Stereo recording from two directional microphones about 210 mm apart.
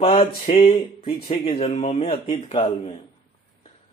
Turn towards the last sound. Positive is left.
turn(degrees=30)  # may be behind; listen again after turning